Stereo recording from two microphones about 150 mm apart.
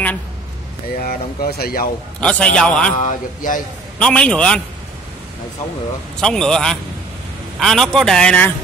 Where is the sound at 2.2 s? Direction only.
10° left (ahead or behind).